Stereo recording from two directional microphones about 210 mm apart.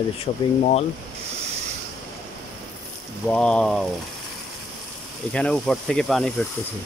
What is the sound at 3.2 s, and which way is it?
Speech, 5° left (ahead or behind).